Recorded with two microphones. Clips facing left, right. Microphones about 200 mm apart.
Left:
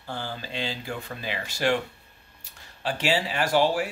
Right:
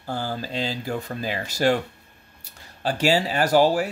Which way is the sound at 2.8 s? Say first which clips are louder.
Right 5 dB; 40° right (ahead or behind).